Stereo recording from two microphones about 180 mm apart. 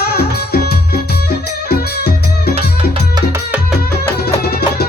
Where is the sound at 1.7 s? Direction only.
60° left (ahead or behind).